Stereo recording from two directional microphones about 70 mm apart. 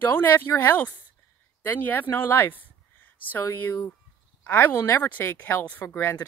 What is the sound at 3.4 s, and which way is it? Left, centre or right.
Speech, left.